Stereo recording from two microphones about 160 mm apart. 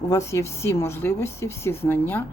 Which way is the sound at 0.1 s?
20° left (ahead or behind).